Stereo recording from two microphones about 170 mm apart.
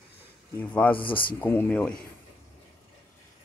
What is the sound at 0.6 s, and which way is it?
Speech, 10° left (ahead or behind).